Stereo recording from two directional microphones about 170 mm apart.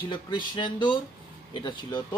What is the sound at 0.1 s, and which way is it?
Speech, 25° left (ahead or behind).